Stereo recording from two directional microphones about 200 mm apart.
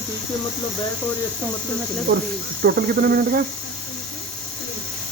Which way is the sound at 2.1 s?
50° right (ahead or behind).